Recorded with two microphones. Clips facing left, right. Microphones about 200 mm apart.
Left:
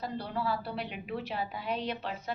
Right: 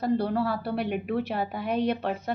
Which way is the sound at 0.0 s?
60° right (ahead or behind).